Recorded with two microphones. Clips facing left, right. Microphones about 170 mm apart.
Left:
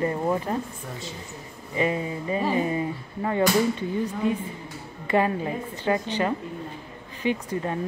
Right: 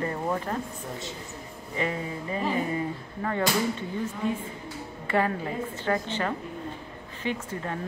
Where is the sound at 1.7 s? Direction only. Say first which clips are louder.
Left 5 dB; 20° left (ahead or behind).